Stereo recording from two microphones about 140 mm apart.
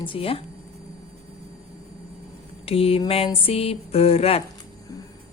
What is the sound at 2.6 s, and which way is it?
A woman's voice, 45° left (ahead or behind).